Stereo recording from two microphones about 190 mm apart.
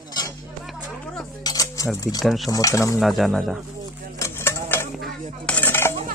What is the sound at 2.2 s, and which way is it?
Speech, centre (ahead or behind).